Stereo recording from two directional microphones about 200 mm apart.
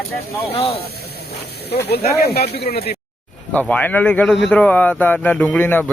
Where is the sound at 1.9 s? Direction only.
55° left (ahead or behind).